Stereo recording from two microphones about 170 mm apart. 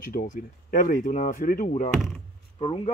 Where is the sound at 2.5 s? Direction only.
30° left (ahead or behind).